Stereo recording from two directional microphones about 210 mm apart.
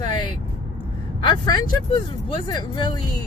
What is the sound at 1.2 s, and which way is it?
Speech, 20° left (ahead or behind).